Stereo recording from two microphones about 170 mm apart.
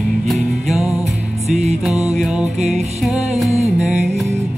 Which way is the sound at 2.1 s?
5° right (ahead or behind).